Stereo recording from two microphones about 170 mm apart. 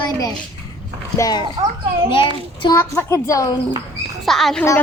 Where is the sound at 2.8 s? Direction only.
15° left (ahead or behind).